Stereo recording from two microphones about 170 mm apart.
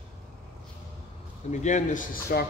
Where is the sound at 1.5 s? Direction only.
45° left (ahead or behind); by 2.5 s 60° left (ahead or behind).